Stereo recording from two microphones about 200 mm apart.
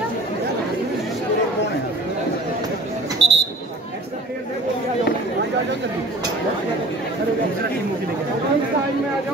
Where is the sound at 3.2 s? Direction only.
30° right (ahead or behind).